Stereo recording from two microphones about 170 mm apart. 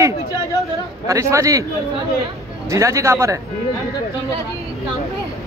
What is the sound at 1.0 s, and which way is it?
Speech, 20° right (ahead or behind).